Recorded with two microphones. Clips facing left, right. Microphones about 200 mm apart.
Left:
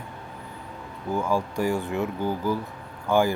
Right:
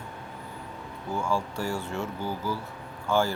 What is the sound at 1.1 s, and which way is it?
Speech, 15° left (ahead or behind).